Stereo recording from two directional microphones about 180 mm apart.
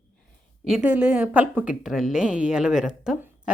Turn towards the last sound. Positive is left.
turn(degrees=-5)  # may be behind; listen again after turning